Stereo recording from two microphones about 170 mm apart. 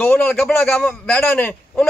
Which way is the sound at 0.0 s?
5° left (ahead or behind).